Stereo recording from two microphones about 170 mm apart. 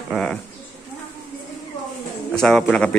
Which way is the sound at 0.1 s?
5° left (ahead or behind).